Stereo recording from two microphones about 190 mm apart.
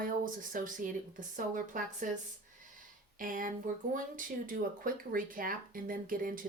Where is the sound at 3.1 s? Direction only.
45° right (ahead or behind).